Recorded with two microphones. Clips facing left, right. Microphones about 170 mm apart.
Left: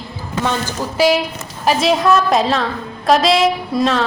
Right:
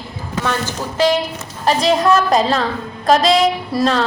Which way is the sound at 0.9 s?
10° left (ahead or behind).